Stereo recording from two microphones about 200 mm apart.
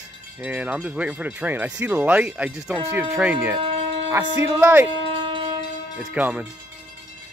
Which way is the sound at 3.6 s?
30° right (ahead or behind).